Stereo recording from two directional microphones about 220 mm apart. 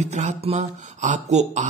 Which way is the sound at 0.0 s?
30° right (ahead or behind).